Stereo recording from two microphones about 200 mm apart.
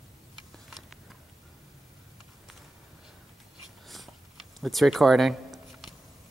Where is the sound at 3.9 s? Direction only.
Centre (ahead or behind).